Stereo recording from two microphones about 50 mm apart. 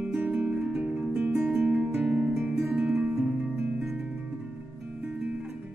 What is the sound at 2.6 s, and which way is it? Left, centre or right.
Music, right.